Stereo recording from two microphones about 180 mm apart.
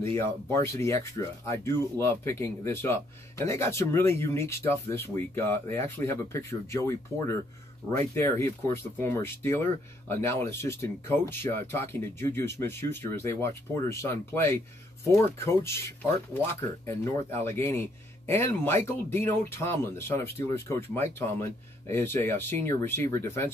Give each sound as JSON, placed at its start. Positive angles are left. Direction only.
{"t": 0.0, "sound": "speech", "side_deg": 15}